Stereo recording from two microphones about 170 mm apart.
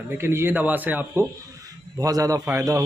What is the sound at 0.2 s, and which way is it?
A man's voice, 15° right (ahead or behind).